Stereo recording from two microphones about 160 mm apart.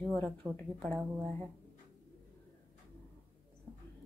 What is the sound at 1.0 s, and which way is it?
Speech, 20° right (ahead or behind).